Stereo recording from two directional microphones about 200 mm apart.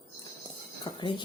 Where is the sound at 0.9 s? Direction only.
25° left (ahead or behind).